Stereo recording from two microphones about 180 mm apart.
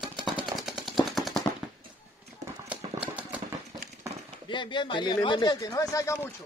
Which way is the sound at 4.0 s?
20° right (ahead or behind).